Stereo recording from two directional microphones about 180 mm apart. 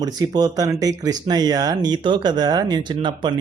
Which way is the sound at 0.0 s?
20° right (ahead or behind).